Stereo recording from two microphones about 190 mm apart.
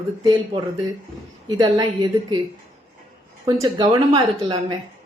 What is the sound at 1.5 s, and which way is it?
Speech, 20° right (ahead or behind).